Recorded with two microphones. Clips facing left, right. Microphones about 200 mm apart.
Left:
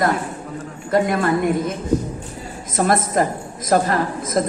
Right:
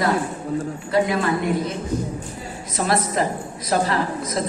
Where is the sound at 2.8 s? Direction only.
50° left (ahead or behind).